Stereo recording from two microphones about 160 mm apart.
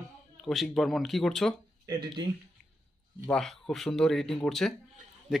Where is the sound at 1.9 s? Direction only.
25° right (ahead or behind).